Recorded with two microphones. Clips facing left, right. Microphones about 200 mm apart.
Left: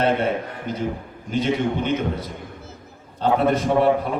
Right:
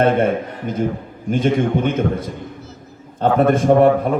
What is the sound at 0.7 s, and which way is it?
A man's voice, 50° right (ahead or behind).